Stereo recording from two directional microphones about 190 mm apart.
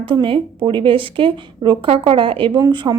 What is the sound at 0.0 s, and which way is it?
A woman's voice, 25° right (ahead or behind).